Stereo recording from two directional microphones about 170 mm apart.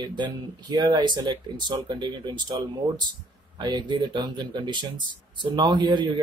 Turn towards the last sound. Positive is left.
turn(degrees=-25)  # may be behind; listen again after turning